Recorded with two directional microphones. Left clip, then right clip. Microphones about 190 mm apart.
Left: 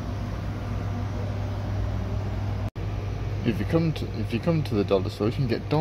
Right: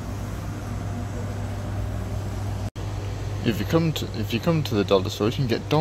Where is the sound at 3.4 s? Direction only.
5° right (ahead or behind).